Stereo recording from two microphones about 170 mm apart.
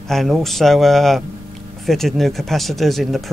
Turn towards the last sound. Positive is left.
turn(degrees=0)  # may be behind; listen again after turning